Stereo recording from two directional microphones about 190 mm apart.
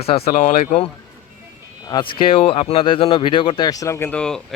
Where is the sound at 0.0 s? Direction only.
30° left (ahead or behind).